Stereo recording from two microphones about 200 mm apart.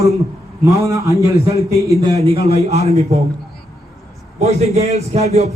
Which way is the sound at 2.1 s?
30° right (ahead or behind).